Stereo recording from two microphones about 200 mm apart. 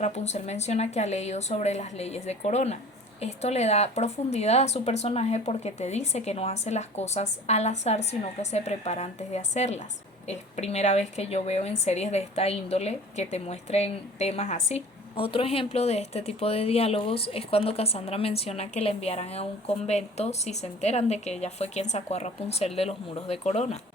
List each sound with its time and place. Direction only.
0.0 s a woman's voice: 35° left (ahead or behind)